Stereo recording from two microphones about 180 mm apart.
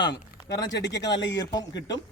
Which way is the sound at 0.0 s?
70° left (ahead or behind).